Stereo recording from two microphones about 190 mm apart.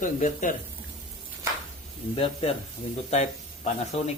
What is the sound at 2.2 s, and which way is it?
Speech, 30° left (ahead or behind).